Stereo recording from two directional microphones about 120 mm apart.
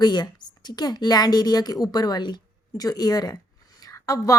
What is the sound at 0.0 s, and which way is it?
A woman's voice, 35° left (ahead or behind).